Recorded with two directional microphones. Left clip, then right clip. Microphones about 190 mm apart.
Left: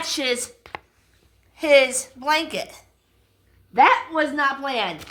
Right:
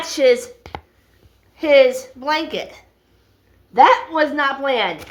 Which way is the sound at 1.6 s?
45° left (ahead or behind).